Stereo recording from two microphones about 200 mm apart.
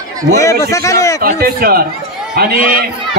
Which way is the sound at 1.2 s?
50° right (ahead or behind).